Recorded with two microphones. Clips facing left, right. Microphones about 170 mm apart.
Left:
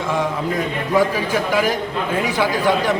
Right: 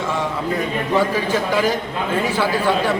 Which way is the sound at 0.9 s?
10° left (ahead or behind).